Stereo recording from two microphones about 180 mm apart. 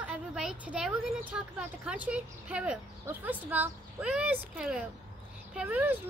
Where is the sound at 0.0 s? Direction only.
5° right (ahead or behind).